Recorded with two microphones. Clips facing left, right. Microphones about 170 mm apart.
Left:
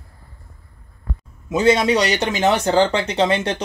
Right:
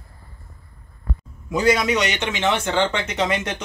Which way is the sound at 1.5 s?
25° left (ahead or behind).